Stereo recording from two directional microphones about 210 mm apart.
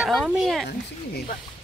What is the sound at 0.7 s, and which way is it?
Speech, 50° left (ahead or behind).